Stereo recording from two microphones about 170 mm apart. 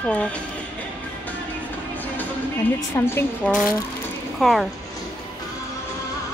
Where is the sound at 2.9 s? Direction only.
15° left (ahead or behind).